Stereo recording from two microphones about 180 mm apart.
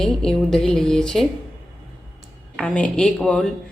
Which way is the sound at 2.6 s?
5° left (ahead or behind).